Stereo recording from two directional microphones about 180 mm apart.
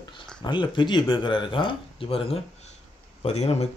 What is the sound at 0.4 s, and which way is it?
Speech, 25° left (ahead or behind).